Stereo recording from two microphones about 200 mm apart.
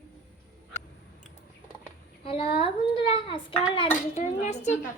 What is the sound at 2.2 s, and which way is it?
A child's voice, 25° left (ahead or behind).